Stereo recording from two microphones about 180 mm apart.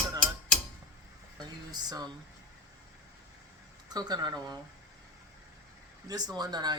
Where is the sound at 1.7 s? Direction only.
20° right (ahead or behind).